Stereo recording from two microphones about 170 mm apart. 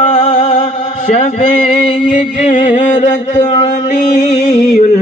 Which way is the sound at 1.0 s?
45° left (ahead or behind).